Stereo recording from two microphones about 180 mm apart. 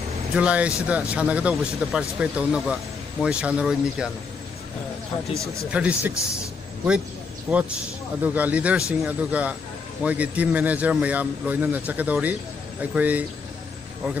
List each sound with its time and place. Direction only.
0.4 s speech: 5° right (ahead or behind)
5.3 s speech: 15° right (ahead or behind)
5.7 s speech: 5° right (ahead or behind)
7.5 s speech: centre (ahead or behind)